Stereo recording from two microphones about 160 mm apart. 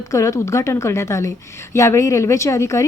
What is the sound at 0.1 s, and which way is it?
A woman's voice, 20° left (ahead or behind).